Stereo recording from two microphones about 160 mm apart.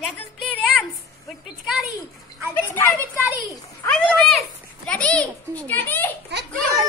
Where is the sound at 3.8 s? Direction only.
10° left (ahead or behind).